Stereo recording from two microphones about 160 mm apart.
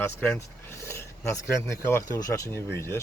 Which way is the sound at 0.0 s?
15° left (ahead or behind).